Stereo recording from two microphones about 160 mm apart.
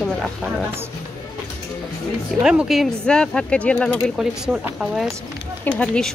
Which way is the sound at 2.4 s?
5° right (ahead or behind).